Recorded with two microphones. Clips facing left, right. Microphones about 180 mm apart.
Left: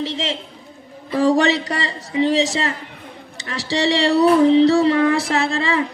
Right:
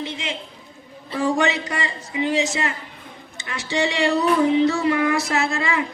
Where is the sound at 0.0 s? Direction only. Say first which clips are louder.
Left 5 dB; 35° left (ahead or behind).